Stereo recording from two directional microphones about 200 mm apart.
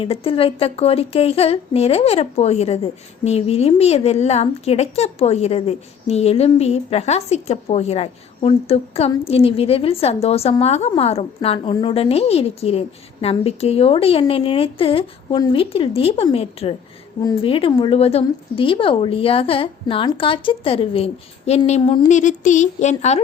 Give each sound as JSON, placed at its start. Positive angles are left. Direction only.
{"t": 0.0, "sound": "a woman's voice", "side_deg": 30}
{"t": 22.1, "sound": "a woman's voice", "side_deg": 40}